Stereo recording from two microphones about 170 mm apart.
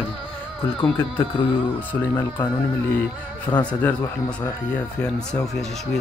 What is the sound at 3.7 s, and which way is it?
Speech, 10° left (ahead or behind).